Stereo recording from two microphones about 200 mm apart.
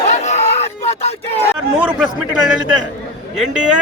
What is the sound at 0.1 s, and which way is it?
Crowd, 35° left (ahead or behind).